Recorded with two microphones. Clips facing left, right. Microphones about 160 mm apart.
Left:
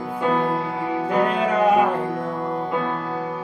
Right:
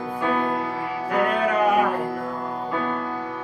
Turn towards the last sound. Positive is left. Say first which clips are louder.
# left 2 dB
turn(degrees=25)  # may be behind; listen again after turning